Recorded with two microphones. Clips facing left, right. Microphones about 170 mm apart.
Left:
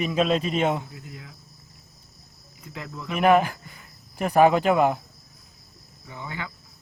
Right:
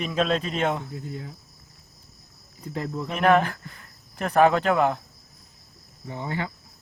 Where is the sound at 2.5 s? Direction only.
35° right (ahead or behind).